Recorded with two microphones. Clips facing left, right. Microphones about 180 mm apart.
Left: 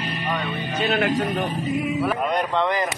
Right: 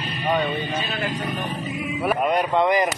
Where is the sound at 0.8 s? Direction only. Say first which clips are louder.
Left 6 dB; 75° left (ahead or behind).